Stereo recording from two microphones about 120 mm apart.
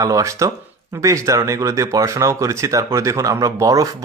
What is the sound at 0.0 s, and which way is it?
Speech, 30° right (ahead or behind).